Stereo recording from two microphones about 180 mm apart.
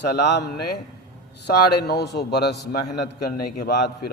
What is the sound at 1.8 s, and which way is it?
Speech, 65° left (ahead or behind).